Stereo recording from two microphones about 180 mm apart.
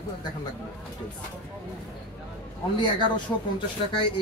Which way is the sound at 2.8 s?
25° left (ahead or behind).